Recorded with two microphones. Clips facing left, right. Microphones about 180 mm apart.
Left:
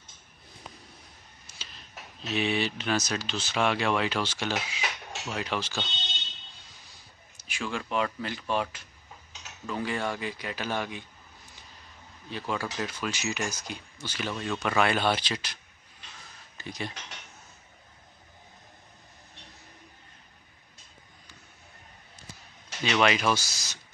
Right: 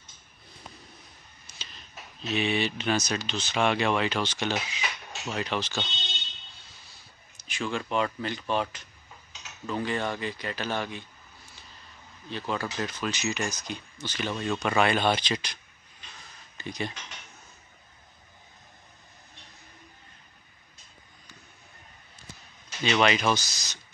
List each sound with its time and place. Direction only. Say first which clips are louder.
1.5 s a sound: right 1 dB; 5° left (ahead or behind)
2.2 s speech: right 1 dB; centre (ahead or behind)
6.9 s a man's voice: left 1 dB; 10° left (ahead or behind)
12.3 s speech: right 1 dB; 10° left (ahead or behind)
22.8 s speech: right 1 dB; 5° left (ahead or behind)